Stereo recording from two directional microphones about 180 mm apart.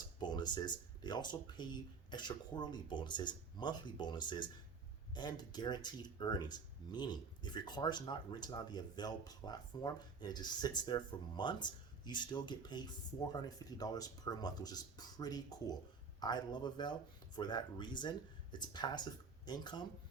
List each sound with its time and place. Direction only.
0.2 s speech: 25° left (ahead or behind)